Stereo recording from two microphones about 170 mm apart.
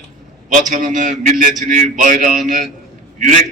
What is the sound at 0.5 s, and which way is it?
A man's voice, 50° right (ahead or behind).